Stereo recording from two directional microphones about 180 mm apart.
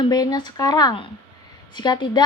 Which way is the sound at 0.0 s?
20° left (ahead or behind).